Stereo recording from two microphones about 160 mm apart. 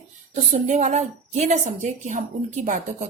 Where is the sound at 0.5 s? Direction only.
50° right (ahead or behind).